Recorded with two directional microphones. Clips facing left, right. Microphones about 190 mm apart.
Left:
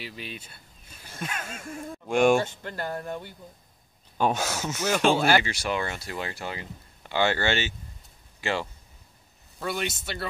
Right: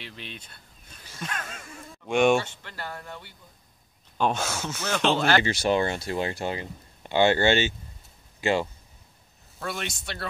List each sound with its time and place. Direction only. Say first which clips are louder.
0.0 s a sound: left 3 dB; 5° left (ahead or behind)
1.2 s speech: left 1 dB; 5° left (ahead or behind)
2.3 s speech: left 1 dB; 45° left (ahead or behind)
4.2 s speech: left 1 dB; 10° left (ahead or behind)
5.4 s speech: right 6 dB; 25° right (ahead or behind)
9.6 s speech: left 3 dB; 5° left (ahead or behind)